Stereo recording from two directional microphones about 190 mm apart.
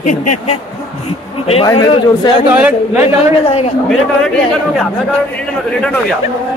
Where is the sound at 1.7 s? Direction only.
20° left (ahead or behind).